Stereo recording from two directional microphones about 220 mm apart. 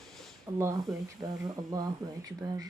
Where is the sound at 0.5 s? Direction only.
10° right (ahead or behind).